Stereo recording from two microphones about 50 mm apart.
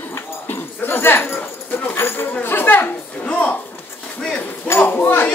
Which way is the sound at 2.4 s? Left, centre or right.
Left.